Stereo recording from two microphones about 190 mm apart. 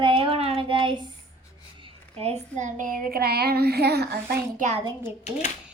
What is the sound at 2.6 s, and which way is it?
Child singing, 40° right (ahead or behind).